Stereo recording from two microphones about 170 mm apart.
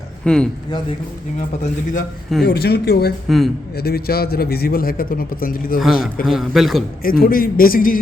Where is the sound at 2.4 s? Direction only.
65° left (ahead or behind).